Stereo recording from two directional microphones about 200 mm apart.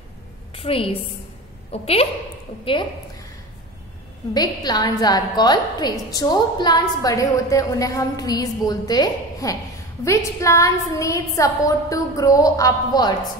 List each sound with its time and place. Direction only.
0.6 s a woman's voice: 30° left (ahead or behind)
4.3 s a woman's voice: 20° left (ahead or behind)